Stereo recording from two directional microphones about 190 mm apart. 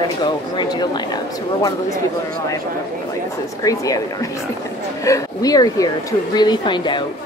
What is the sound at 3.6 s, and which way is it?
Speech, 20° left (ahead or behind).